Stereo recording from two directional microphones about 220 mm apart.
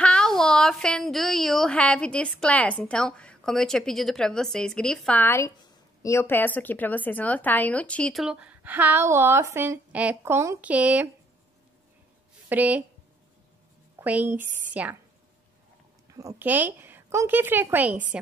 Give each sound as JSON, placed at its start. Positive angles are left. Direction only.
{"t": 0.0, "sound": "a woman's voice", "side_deg": 5}
{"t": 12.4, "sound": "a woman's voice", "side_deg": -5}
{"t": 13.9, "sound": "a woman's voice", "side_deg": -10}
{"t": 16.1, "sound": "a woman's voice", "side_deg": -15}